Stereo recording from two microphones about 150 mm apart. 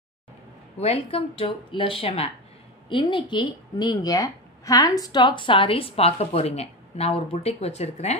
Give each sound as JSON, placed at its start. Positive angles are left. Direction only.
{"t": 0.7, "sound": "a woman's voice", "side_deg": 40}